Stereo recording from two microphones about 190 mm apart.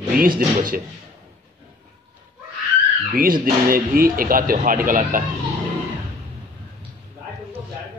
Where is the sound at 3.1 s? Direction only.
50° right (ahead or behind).